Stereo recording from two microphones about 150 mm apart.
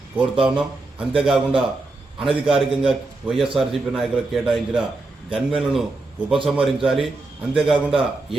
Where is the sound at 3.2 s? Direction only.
Centre (ahead or behind).